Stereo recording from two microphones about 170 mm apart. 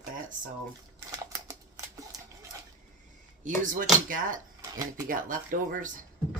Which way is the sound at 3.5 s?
50° right (ahead or behind).